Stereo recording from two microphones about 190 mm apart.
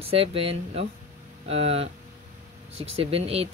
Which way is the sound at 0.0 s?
30° right (ahead or behind).